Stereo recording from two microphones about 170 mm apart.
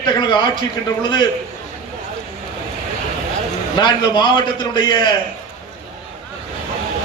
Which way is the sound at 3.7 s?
25° left (ahead or behind).